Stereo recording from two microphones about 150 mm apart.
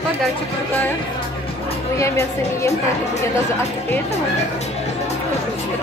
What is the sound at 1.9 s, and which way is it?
Speech, 20° left (ahead or behind).